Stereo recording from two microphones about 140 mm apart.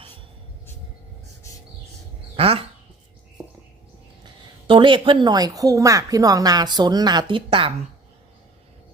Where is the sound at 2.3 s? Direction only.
45° right (ahead or behind).